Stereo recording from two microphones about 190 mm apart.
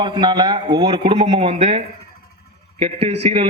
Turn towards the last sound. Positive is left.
turn(degrees=-30)  # may be behind; listen again after turning